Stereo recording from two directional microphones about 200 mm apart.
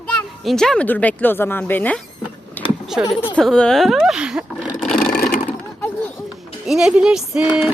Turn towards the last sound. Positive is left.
turn(degrees=-5)  # may be behind; listen again after turning